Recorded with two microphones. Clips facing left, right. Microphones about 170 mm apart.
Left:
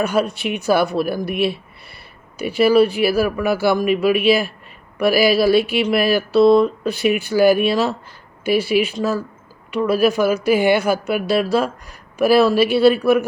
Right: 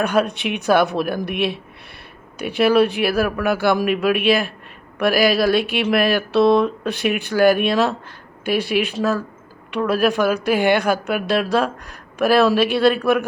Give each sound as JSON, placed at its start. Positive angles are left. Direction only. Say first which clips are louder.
{"t": 0.0, "sound": "speech", "louder": "even", "side_deg": 0}